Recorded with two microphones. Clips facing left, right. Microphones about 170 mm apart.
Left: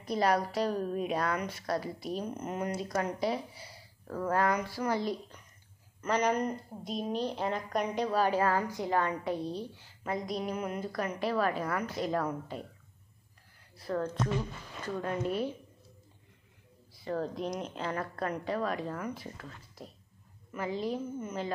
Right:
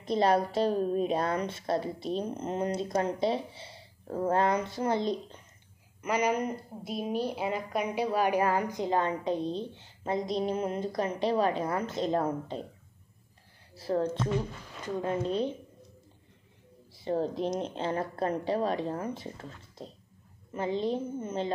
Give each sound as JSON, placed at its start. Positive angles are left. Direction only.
{"t": 0.0, "sound": "a woman's voice", "side_deg": -25}
{"t": 5.9, "sound": "a woman's voice", "side_deg": -10}
{"t": 13.7, "sound": "a woman's voice", "side_deg": -30}
{"t": 16.9, "sound": "a woman's voice", "side_deg": -25}